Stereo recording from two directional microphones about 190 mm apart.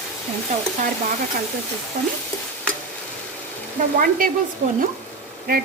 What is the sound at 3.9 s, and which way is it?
Speech, 45° right (ahead or behind).